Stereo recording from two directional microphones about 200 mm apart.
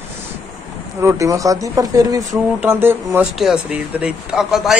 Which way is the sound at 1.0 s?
15° right (ahead or behind).